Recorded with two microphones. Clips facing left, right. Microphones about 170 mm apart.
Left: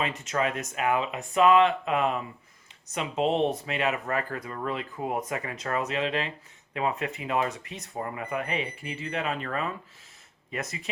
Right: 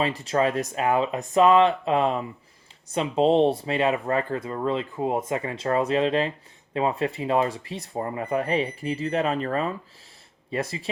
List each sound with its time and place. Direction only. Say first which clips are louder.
0.0 s speech: right 5 dB; 35° right (ahead or behind)